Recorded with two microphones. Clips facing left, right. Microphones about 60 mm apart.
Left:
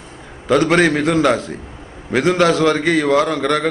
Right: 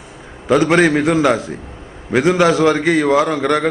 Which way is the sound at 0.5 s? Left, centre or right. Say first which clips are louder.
Right 1 dB; centre.